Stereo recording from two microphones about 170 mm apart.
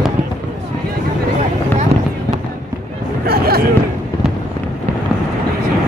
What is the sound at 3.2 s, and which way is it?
Hubbub, 65° right (ahead or behind).